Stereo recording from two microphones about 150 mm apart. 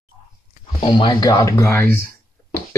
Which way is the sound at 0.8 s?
30° left (ahead or behind).